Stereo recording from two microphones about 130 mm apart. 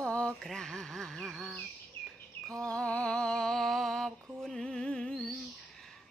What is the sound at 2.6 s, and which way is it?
Speech, 10° left (ahead or behind).